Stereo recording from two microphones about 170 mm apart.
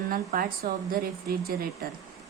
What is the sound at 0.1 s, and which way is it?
Speech, 55° right (ahead or behind).